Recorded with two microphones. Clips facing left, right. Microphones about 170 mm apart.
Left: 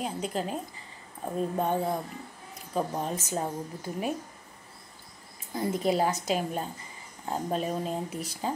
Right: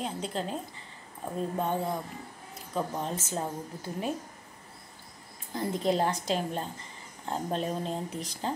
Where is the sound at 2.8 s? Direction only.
15° left (ahead or behind).